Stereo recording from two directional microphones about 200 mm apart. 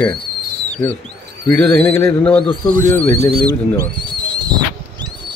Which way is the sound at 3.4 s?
20° right (ahead or behind).